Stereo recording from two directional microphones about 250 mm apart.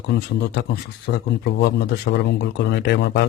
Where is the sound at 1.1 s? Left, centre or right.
Left.